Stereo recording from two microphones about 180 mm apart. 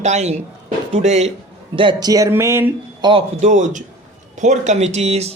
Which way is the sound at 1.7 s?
25° right (ahead or behind).